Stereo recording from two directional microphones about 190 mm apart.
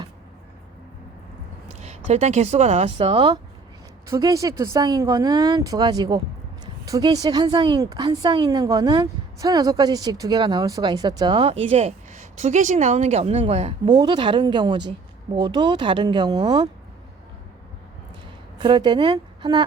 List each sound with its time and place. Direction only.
1.8 s speech: 35° right (ahead or behind)
4.1 s speech: 15° right (ahead or behind)
18.6 s speech: 25° right (ahead or behind)